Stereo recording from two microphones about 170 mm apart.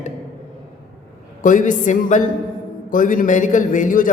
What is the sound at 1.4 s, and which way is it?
A man's voice, 50° left (ahead or behind).